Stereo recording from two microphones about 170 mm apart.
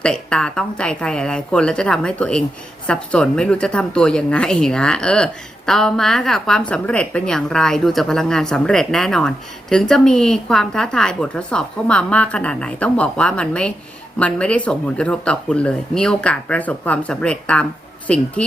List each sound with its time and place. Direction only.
0.0 s a woman's voice: 5° left (ahead or behind)